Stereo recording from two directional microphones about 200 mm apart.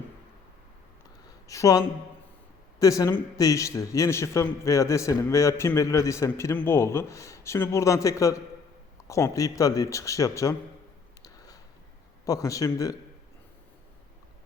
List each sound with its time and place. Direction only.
1.5 s a man's voice: 15° left (ahead or behind)
11.2 s a sound: 20° left (ahead or behind)
12.2 s a man's voice: 15° left (ahead or behind)